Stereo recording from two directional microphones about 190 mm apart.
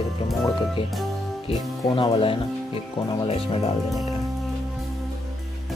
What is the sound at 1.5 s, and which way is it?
Speech, 25° left (ahead or behind).